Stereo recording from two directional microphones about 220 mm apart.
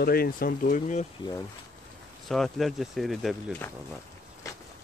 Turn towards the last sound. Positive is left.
turn(degrees=5)  # may be behind; listen again after turning